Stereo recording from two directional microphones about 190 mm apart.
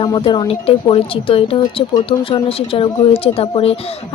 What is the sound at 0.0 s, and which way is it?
Speech, 25° left (ahead or behind).